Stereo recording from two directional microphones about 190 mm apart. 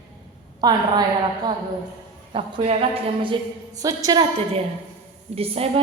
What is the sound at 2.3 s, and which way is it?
A woman's voice, 30° right (ahead or behind).